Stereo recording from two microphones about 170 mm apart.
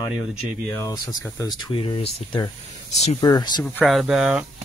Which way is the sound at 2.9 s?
40° left (ahead or behind).